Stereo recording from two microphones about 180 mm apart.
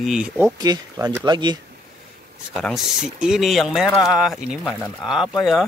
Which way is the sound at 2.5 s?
Centre (ahead or behind).